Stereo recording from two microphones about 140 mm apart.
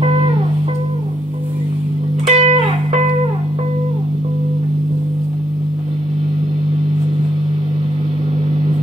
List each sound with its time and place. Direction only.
2.2 s music: 50° right (ahead or behind)